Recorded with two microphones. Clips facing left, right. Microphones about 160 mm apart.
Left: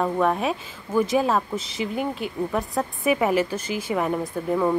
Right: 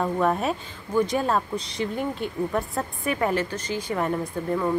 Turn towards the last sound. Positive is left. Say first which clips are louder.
# left 3 dB
turn(degrees=5)  # may be behind; listen again after turning